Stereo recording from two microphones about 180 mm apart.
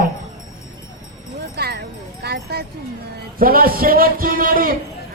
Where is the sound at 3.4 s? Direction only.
55° right (ahead or behind).